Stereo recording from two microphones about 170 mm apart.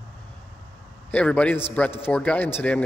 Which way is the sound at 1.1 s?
5° left (ahead or behind).